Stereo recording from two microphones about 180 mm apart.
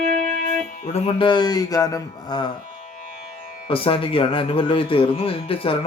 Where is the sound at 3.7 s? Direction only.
30° left (ahead or behind).